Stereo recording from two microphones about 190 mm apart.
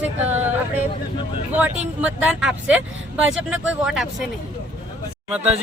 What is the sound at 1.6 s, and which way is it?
Speech, 10° right (ahead or behind).